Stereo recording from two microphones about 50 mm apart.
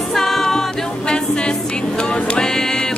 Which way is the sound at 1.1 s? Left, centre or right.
Centre.